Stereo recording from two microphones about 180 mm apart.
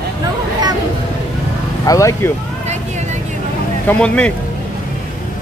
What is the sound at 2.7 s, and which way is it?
Vehicle, 40° right (ahead or behind).